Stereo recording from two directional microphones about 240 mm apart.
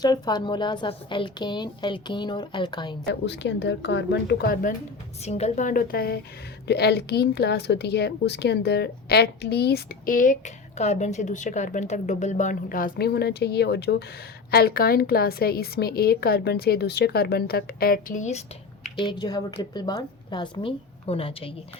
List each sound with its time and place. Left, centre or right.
0.0 s a woman's voice: centre
3.1 s a woman's voice: left
5.2 s a woman's voice: left